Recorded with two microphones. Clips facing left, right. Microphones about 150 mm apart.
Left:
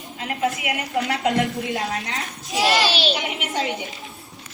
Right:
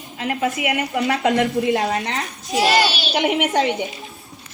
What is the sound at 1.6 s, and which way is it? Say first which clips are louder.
Speech: right 8 dB; 90° right.